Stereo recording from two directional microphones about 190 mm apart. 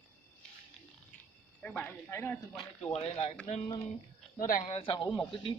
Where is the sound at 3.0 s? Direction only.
30° left (ahead or behind).